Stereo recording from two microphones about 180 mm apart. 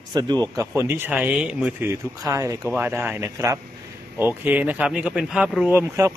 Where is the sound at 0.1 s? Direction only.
20° right (ahead or behind).